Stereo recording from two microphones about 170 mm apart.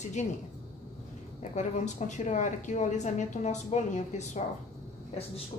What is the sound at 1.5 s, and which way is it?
A woman's voice, 45° left (ahead or behind).